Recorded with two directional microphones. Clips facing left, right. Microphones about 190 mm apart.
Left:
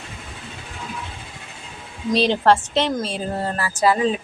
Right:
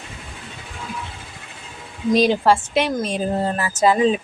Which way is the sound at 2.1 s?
10° right (ahead or behind).